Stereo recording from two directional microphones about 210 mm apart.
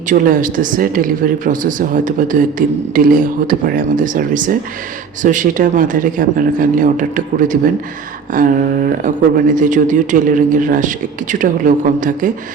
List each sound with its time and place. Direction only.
0.1 s speech: 40° right (ahead or behind)